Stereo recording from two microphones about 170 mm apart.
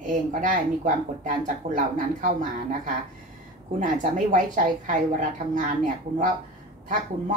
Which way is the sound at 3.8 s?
50° right (ahead or behind).